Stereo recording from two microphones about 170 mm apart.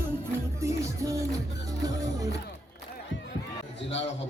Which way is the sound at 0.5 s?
15° right (ahead or behind).